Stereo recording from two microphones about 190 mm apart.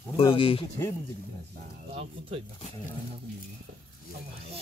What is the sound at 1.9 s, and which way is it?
Speech, 35° right (ahead or behind).